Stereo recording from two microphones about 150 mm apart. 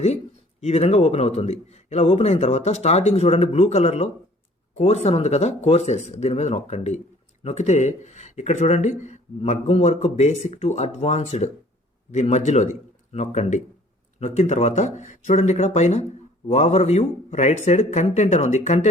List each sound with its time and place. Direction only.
0.6 s a man's voice: 45° left (ahead or behind)
9.4 s a man's voice: 40° left (ahead or behind)